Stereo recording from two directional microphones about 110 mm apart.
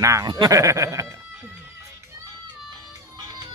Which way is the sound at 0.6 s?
30° right (ahead or behind).